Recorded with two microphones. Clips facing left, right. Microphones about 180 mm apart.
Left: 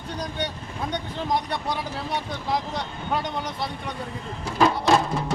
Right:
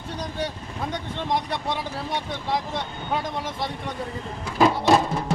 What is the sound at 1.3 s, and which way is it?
Speech, centre (ahead or behind).